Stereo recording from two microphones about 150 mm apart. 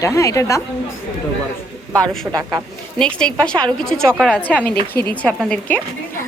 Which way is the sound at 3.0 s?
5° left (ahead or behind).